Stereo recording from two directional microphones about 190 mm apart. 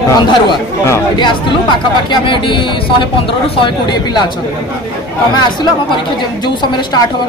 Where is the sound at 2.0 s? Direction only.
25° left (ahead or behind).